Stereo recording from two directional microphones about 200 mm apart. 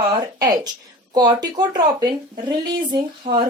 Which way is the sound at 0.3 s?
20° right (ahead or behind).